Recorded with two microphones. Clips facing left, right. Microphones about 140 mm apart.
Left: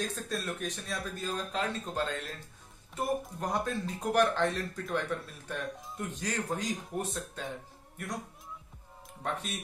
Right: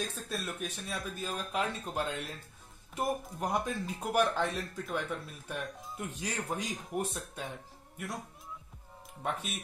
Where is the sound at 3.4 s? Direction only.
10° right (ahead or behind).